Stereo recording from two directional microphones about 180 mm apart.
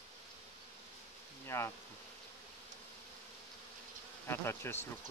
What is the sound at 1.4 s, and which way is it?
Bee, 15° left (ahead or behind).